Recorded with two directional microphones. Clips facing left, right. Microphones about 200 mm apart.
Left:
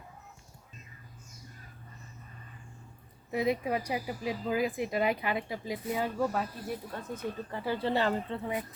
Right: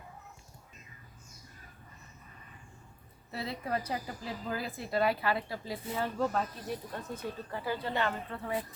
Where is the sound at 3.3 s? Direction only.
15° left (ahead or behind).